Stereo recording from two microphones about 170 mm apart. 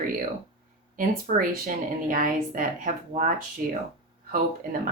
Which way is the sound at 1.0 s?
55° right (ahead or behind).